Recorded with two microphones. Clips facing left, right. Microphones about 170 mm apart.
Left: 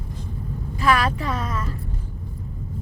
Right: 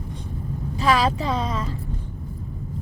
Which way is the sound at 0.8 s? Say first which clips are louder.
Right 1 dB; 25° right (ahead or behind).